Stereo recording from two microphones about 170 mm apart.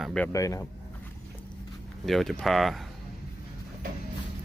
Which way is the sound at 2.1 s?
Centre (ahead or behind).